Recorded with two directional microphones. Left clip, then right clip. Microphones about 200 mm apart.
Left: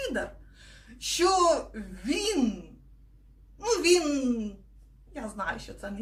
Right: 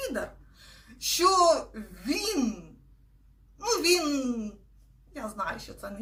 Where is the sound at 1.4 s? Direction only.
5° left (ahead or behind).